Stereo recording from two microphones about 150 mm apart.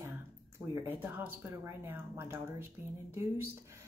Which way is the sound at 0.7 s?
15° right (ahead or behind).